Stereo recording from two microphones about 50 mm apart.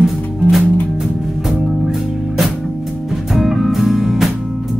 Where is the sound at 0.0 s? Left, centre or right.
Centre.